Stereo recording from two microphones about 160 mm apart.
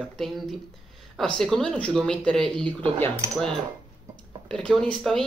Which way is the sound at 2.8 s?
35° right (ahead or behind).